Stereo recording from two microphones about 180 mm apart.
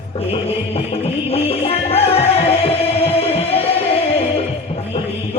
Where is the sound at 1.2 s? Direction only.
35° left (ahead or behind).